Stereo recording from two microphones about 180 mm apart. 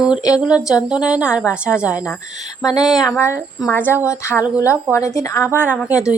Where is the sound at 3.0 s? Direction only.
15° left (ahead or behind).